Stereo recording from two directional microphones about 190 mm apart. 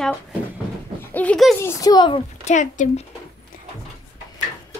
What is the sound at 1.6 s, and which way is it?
Speech, 20° left (ahead or behind).